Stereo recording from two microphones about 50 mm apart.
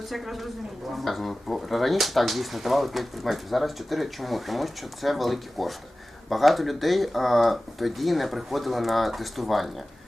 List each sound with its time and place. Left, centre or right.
0.1 s speech: centre